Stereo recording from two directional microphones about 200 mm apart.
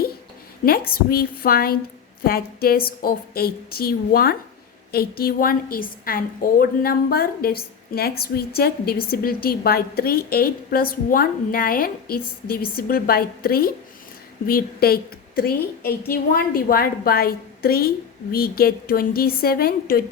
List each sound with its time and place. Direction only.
0.6 s a woman's voice: 50° left (ahead or behind)